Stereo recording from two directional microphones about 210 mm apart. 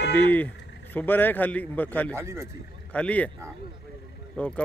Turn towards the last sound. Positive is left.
turn(degrees=5)  # may be behind; listen again after turning